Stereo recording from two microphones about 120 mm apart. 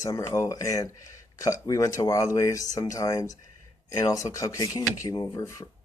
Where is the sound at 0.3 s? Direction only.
25° left (ahead or behind).